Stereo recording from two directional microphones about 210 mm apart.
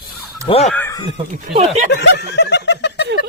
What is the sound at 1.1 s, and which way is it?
Speech, 35° right (ahead or behind).